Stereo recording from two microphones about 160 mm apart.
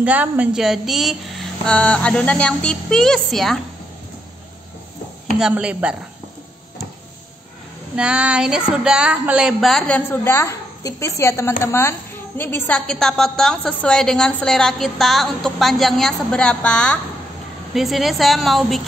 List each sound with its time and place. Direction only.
0.0 s a woman's voice: 10° right (ahead or behind)
5.4 s speech: 5° right (ahead or behind)
7.9 s a woman's voice: 5° right (ahead or behind)